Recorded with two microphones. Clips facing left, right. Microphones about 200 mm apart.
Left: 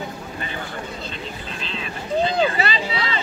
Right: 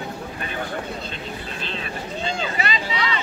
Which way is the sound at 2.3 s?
35° left (ahead or behind).